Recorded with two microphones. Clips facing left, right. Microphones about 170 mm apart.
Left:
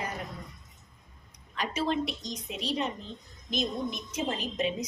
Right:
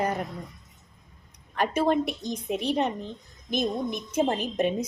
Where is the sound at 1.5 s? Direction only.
55° right (ahead or behind).